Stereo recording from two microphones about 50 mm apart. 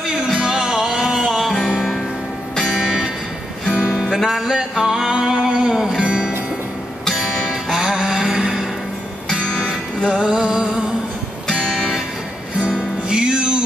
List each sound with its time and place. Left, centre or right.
0.4 s music: centre
1.8 s music: centre
2.7 s music: centre
11.6 s music: centre
12.5 s music: right